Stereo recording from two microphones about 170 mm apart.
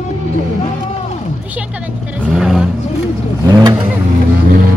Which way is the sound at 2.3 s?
5° right (ahead or behind).